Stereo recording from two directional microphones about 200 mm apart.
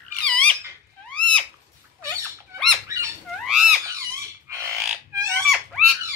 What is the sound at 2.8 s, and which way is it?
Rodents, 15° right (ahead or behind).